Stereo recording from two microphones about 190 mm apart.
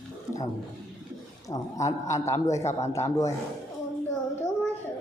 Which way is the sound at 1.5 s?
15° left (ahead or behind).